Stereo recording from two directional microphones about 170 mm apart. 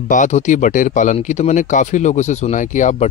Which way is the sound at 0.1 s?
45° left (ahead or behind).